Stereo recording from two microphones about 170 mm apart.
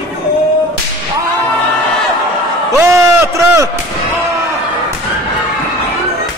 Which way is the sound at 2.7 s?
20° right (ahead or behind).